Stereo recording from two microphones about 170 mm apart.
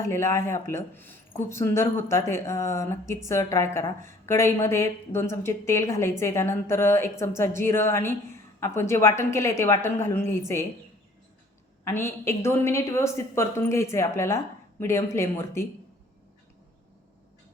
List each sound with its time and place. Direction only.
0.0 s a woman's voice: 15° left (ahead or behind)
11.9 s a woman's voice: 15° left (ahead or behind)